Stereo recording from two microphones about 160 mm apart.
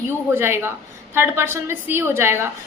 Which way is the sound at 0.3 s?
15° right (ahead or behind).